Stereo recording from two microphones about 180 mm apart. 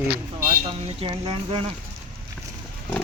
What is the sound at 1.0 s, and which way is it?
Music, 25° right (ahead or behind).